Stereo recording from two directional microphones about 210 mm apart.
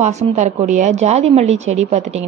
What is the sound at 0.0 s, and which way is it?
A woman's voice, 35° right (ahead or behind).